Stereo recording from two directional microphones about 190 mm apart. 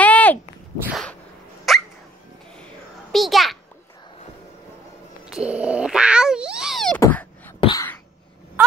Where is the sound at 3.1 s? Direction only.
Centre (ahead or behind).